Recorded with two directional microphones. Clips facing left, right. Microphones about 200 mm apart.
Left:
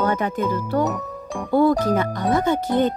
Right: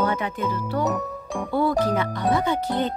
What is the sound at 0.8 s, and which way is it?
Speech, centre (ahead or behind).